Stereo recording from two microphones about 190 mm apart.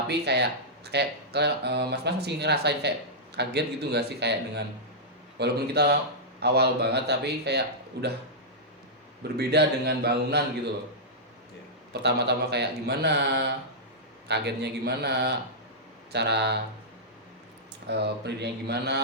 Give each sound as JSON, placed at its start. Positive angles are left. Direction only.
{"t": 0.1, "sound": "speech", "side_deg": -60}
{"t": 9.4, "sound": "speech", "side_deg": -60}
{"t": 11.9, "sound": "speech", "side_deg": -60}
{"t": 17.8, "sound": "speech", "side_deg": -60}